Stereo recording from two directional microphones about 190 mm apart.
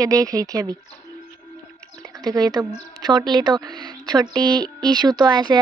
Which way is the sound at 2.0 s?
20° right (ahead or behind).